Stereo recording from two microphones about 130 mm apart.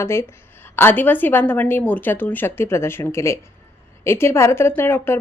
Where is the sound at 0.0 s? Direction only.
20° left (ahead or behind).